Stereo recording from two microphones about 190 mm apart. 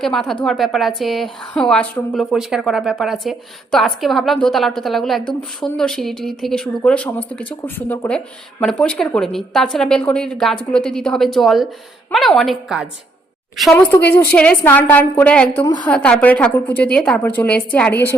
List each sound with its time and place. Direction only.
0.0 s a woman's voice: centre (ahead or behind)
15.6 s a woman's voice: 20° left (ahead or behind)
15.9 s a woman's voice: 5° left (ahead or behind)